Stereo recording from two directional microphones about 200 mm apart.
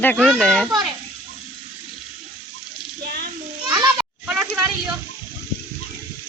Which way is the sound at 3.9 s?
5° right (ahead or behind).